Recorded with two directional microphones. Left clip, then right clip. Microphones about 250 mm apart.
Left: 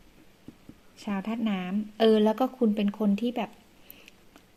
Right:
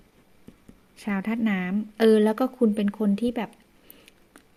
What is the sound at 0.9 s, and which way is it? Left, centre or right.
Speech, right.